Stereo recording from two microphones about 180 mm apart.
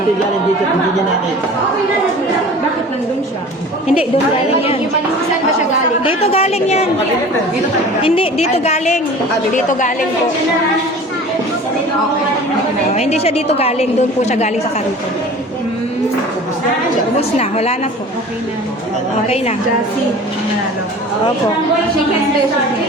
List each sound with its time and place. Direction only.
6.0 s a woman's voice: 30° left (ahead or behind)
8.0 s a woman's voice: 30° left (ahead or behind)
12.9 s a woman's voice: 35° left (ahead or behind)
17.2 s a woman's voice: 35° left (ahead or behind)